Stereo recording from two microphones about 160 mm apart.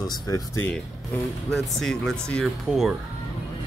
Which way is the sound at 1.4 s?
5° left (ahead or behind).